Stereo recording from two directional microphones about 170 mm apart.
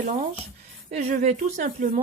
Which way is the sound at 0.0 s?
45° right (ahead or behind).